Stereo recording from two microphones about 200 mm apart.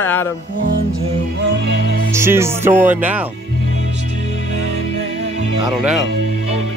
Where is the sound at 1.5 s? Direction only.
60° right (ahead or behind).